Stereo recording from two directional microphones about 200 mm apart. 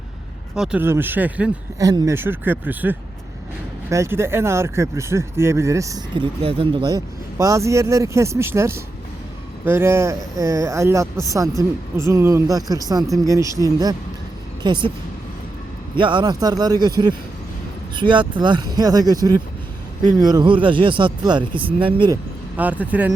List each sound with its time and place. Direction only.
0.5 s speech: 5° right (ahead or behind)
6.4 s speech: 25° right (ahead or behind)
16.0 s speech: 25° right (ahead or behind)
17.9 s speech: 25° right (ahead or behind)
22.5 s speech: 10° right (ahead or behind)